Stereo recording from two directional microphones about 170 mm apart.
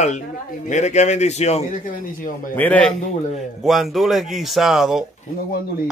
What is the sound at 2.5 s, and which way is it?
A man's voice, 10° left (ahead or behind).